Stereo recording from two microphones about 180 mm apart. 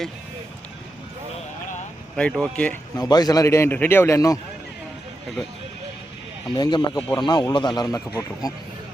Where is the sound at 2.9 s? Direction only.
20° left (ahead or behind).